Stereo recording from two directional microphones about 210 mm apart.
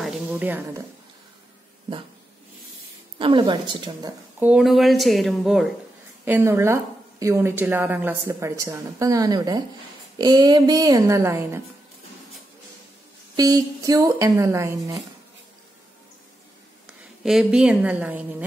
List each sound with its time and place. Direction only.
0.0 s a sound: 5° right (ahead or behind)
3.2 s a woman's voice: 25° right (ahead or behind)
4.4 s a woman's voice: 5° right (ahead or behind)
13.4 s a woman's voice: 15° right (ahead or behind)
16.8 s a woman's voice: centre (ahead or behind)